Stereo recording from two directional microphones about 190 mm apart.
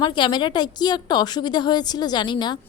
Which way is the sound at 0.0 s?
25° left (ahead or behind).